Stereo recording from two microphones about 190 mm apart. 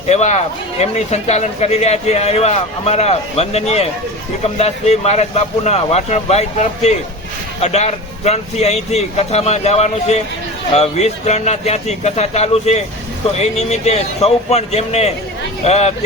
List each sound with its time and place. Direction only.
0.1 s speech: 35° left (ahead or behind)